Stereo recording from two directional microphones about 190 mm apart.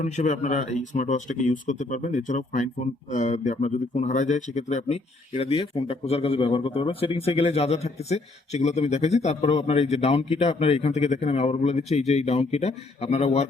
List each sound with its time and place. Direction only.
0.0 s speech: 40° left (ahead or behind)